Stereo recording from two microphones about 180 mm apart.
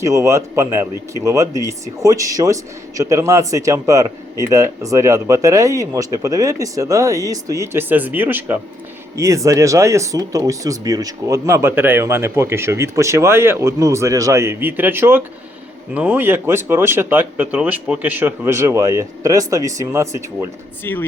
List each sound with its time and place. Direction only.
0.0 s speech: 15° right (ahead or behind)
20.9 s speech: 15° left (ahead or behind)